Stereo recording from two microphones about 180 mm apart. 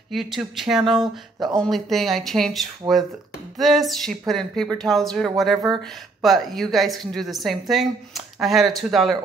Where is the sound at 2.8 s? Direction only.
20° right (ahead or behind).